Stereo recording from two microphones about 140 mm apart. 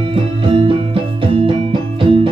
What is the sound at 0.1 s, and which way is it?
Music, 40° right (ahead or behind).